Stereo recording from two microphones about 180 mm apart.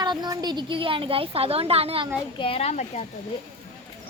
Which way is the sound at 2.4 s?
35° left (ahead or behind).